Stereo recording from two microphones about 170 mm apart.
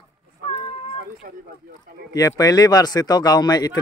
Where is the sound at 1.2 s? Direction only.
55° right (ahead or behind).